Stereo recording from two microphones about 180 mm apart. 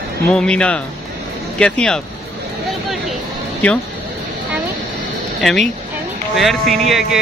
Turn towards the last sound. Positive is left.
turn(degrees=0)  # may be behind; listen again after turning